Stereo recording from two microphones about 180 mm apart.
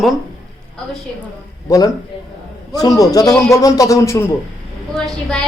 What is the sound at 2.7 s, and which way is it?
A man's voice, 20° left (ahead or behind).